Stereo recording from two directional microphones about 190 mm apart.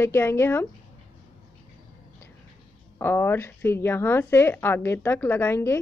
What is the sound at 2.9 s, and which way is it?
A woman's voice, 10° left (ahead or behind).